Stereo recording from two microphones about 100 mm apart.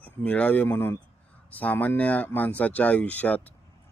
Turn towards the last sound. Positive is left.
turn(degrees=15)  # may be behind; listen again after turning